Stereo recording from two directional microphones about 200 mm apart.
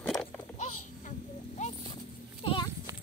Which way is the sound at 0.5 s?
35° left (ahead or behind).